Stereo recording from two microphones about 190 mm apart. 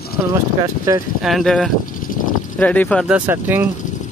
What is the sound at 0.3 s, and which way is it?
Speech, 20° right (ahead or behind).